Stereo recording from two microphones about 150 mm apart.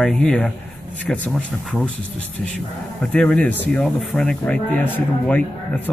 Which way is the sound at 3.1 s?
5° left (ahead or behind).